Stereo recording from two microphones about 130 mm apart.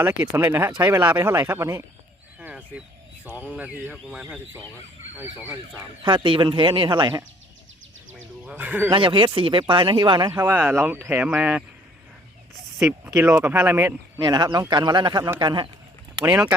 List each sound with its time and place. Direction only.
0.0 s speech: 15° right (ahead or behind)
2.4 s a sound: 10° right (ahead or behind)
3.2 s speech: 15° right (ahead or behind)
5.1 s speech: 15° right (ahead or behind)
6.0 s speech: 40° right (ahead or behind)
8.4 s speech: 15° right (ahead or behind)
8.9 s speech: 40° right (ahead or behind)
10.3 s speech: 15° right (ahead or behind)
13.2 s speech: 15° right (ahead or behind)
14.2 s speech: 35° right (ahead or behind)
16.2 s speech: 15° right (ahead or behind)